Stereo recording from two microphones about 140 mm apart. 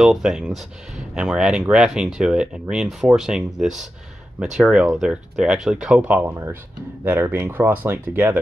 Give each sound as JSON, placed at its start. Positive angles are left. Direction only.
{"t": 0.0, "sound": "speech", "side_deg": -5}